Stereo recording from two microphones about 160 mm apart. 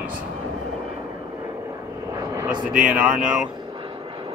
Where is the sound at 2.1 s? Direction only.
20° right (ahead or behind).